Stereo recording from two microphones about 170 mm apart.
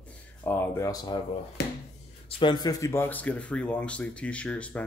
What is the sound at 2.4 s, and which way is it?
Speech, 25° left (ahead or behind).